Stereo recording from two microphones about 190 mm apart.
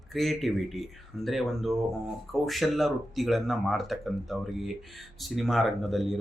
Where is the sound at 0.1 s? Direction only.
Centre (ahead or behind).